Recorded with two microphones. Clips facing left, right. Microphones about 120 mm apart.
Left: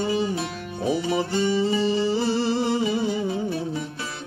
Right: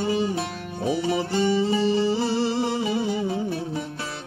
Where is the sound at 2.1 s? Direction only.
25° right (ahead or behind).